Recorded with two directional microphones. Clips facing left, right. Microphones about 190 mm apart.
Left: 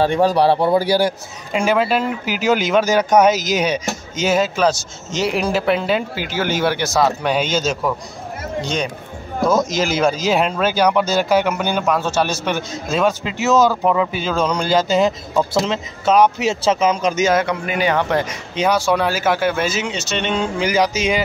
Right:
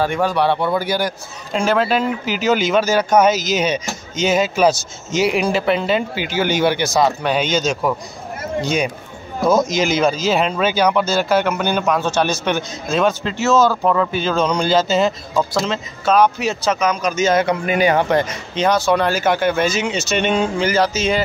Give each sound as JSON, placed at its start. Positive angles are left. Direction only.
{"t": 0.0, "sound": "a man's voice", "side_deg": 35}
{"t": 1.5, "sound": "a man's voice", "side_deg": 10}
{"t": 4.4, "sound": "speech", "side_deg": -10}
{"t": 8.5, "sound": "a man's voice", "side_deg": -10}
{"t": 17.2, "sound": "speech", "side_deg": 5}
{"t": 19.9, "sound": "speech", "side_deg": -10}
{"t": 20.5, "sound": "a man's voice", "side_deg": 10}